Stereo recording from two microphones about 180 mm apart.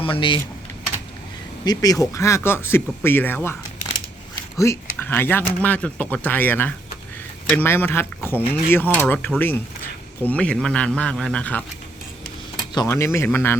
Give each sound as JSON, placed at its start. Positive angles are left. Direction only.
{"t": 0.0, "sound": "speech", "side_deg": 30}
{"t": 1.6, "sound": "speech", "side_deg": 20}
{"t": 4.5, "sound": "speech", "side_deg": 15}
{"t": 12.7, "sound": "speech", "side_deg": 20}